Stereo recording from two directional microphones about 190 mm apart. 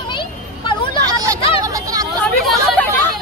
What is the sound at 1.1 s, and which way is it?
Hubbub, 20° right (ahead or behind).